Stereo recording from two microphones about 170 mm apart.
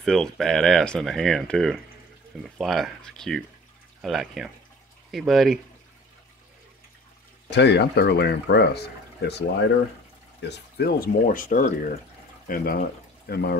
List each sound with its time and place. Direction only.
0.0 s speech: centre (ahead or behind)
7.4 s speech: 90° left
10.4 s speech: 75° left (ahead or behind)